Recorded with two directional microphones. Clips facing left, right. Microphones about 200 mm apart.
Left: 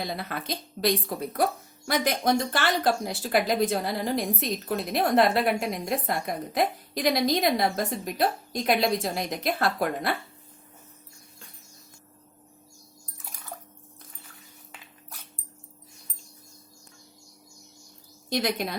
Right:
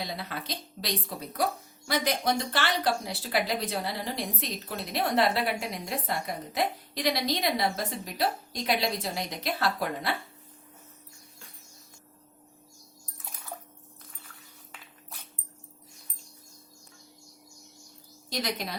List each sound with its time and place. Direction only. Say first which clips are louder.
0.0 s a woman's voice: left 3 dB; 50° left (ahead or behind)
18.3 s a woman's voice: left 5 dB; 55° left (ahead or behind)